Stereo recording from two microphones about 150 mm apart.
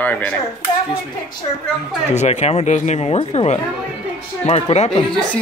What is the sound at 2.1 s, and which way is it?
Speech, 45° left (ahead or behind).